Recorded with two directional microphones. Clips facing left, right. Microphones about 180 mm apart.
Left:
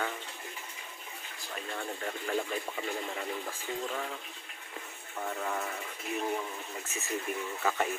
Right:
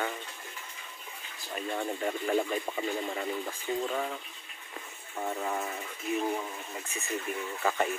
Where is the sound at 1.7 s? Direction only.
15° right (ahead or behind).